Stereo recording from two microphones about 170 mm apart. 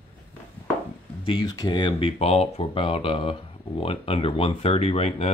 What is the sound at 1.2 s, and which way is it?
Speech, 30° left (ahead or behind).